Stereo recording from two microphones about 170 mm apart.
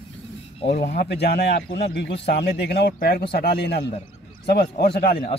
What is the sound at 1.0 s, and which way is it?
Speech, 75° left (ahead or behind).